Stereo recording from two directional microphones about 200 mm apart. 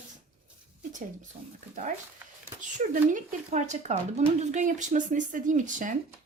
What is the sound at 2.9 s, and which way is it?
Speech, 40° right (ahead or behind).